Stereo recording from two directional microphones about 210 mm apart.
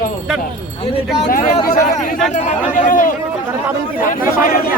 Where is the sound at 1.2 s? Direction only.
40° left (ahead or behind).